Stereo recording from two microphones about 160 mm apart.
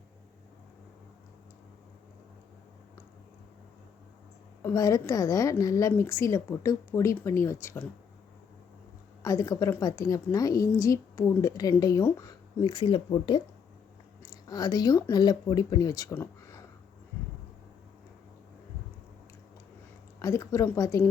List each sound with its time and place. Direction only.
4.6 s a woman's voice: 20° left (ahead or behind)
9.2 s a woman's voice: 20° left (ahead or behind)
20.1 s a woman's voice: 20° left (ahead or behind)